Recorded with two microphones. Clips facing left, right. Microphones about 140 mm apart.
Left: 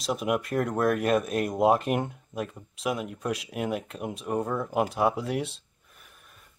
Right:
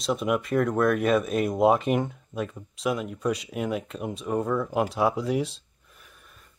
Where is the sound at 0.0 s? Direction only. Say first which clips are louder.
Right 2 dB; 5° left (ahead or behind).